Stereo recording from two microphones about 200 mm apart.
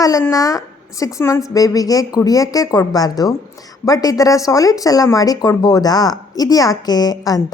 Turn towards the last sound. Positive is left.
turn(degrees=20)  # may be behind; listen again after turning